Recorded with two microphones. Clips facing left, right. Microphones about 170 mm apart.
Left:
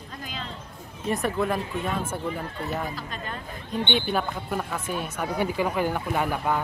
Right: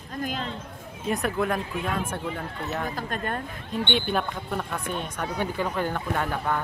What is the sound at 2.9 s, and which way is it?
Speech, 50° right (ahead or behind).